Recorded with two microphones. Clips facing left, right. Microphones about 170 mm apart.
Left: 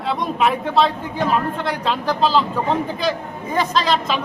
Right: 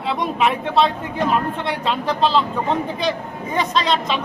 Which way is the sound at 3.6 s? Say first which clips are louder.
Left 1 dB; centre (ahead or behind).